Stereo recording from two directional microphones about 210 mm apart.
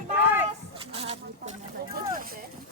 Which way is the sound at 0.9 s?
30° right (ahead or behind).